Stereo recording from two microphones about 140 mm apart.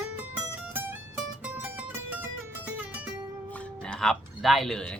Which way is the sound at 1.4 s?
15° right (ahead or behind).